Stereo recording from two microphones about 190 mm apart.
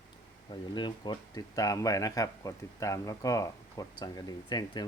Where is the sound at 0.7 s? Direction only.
25° left (ahead or behind).